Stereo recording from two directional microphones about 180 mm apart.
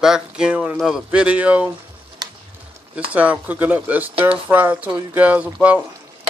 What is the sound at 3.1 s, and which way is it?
Speech, 10° right (ahead or behind).